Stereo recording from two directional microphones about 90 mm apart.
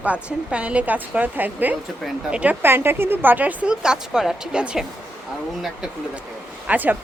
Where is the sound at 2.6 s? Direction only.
25° right (ahead or behind); by 4.8 s 10° right (ahead or behind).